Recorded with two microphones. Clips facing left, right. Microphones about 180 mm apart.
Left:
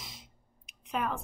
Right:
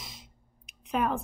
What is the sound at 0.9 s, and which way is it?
Speech, 45° right (ahead or behind).